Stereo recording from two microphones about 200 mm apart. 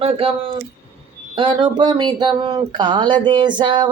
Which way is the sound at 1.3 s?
25° right (ahead or behind).